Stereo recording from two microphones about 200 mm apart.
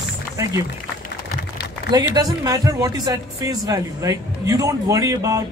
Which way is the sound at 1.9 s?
20° right (ahead or behind).